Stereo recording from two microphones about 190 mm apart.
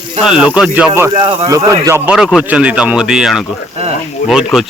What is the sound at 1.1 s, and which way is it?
Speech, 35° right (ahead or behind).